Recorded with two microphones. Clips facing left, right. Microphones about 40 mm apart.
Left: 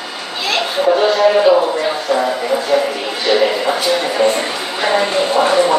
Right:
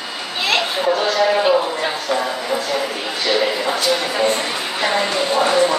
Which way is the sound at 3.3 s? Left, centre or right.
Centre.